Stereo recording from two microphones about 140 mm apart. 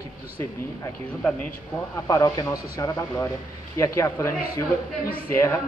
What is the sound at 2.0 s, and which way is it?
A man's voice, 25° left (ahead or behind).